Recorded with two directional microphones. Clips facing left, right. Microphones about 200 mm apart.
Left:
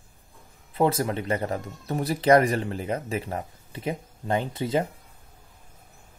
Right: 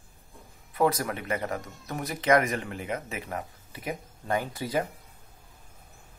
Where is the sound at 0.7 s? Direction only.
25° left (ahead or behind).